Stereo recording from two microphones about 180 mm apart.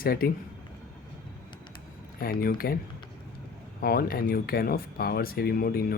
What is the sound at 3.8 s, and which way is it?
Speech, 55° left (ahead or behind).